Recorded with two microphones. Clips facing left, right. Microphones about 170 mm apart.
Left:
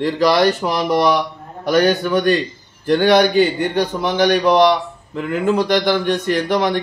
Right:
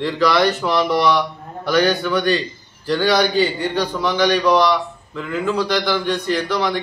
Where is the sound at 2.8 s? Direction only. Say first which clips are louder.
Left 4 dB; 50° left (ahead or behind).